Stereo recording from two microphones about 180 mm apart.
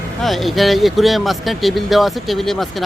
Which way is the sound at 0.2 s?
Centre (ahead or behind).